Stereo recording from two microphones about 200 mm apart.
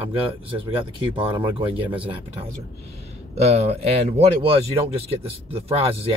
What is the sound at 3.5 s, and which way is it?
Speech, 30° right (ahead or behind).